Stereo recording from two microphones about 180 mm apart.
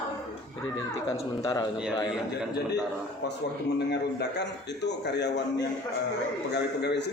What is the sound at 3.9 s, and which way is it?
A man's voice, 70° left (ahead or behind).